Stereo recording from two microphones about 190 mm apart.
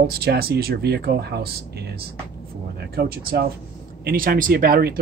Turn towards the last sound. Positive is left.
turn(degrees=-50)  # may be behind; listen again after turning